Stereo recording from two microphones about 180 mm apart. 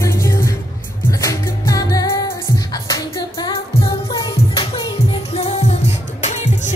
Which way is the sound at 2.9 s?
20° left (ahead or behind).